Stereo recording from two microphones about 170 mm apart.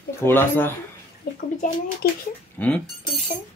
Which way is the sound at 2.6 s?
10° left (ahead or behind).